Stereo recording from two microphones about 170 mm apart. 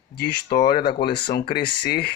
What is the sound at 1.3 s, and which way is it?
Speech, 60° left (ahead or behind).